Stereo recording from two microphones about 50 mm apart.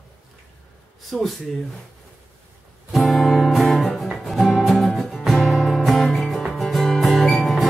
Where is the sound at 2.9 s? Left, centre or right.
Centre.